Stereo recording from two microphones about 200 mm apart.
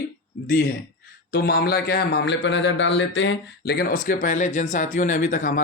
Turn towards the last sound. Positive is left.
turn(degrees=40)  # may be behind; listen again after turning